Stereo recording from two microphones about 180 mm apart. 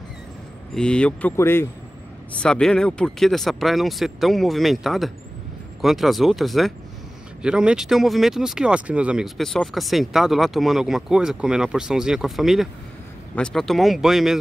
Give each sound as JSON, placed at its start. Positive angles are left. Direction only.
{"t": 0.7, "sound": "speech", "side_deg": 5}